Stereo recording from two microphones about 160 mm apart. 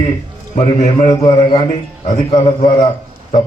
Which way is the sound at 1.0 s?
25° left (ahead or behind).